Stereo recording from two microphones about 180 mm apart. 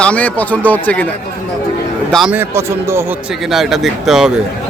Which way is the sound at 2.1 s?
5° right (ahead or behind).